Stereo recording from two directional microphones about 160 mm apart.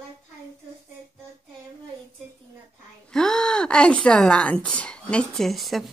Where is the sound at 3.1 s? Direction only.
5° left (ahead or behind).